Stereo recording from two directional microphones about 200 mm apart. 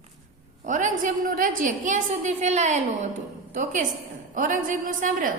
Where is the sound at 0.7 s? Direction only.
40° right (ahead or behind).